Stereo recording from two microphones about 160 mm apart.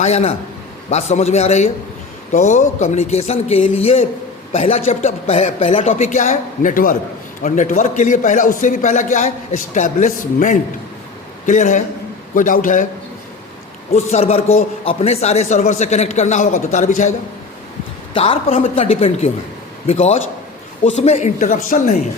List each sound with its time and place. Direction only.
0.0 s a woman's voice: 40° left (ahead or behind)
13.9 s a man's voice: 40° left (ahead or behind)
18.1 s a woman's voice: 35° left (ahead or behind); by 21.9 s 55° left (ahead or behind)